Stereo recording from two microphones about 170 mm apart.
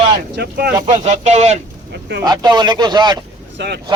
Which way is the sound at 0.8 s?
40° right (ahead or behind).